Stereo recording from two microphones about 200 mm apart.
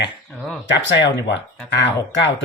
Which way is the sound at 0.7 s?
65° left (ahead or behind).